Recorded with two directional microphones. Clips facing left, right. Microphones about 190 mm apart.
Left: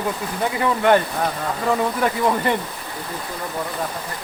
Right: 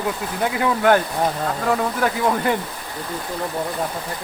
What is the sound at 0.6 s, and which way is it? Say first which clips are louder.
Speech: even; centre (ahead or behind).